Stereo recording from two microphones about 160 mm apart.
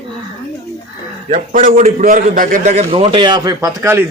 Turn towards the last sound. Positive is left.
turn(degrees=-15)  # may be behind; listen again after turning